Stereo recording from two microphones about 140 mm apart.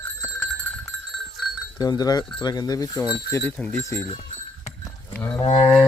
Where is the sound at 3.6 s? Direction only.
15° left (ahead or behind).